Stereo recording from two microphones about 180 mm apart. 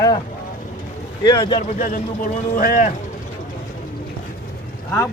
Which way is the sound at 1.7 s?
50° left (ahead or behind).